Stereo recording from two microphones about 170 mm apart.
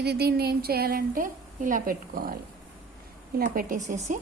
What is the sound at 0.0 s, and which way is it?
A woman's voice, 70° right (ahead or behind).